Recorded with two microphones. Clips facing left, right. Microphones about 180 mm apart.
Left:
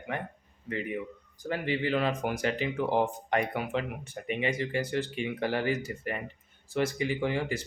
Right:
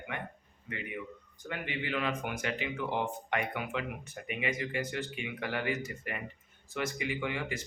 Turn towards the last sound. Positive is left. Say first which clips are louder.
# left 5 dB
turn(degrees=35)  # may be behind; listen again after turning